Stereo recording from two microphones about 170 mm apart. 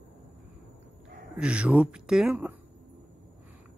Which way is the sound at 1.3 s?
5° right (ahead or behind).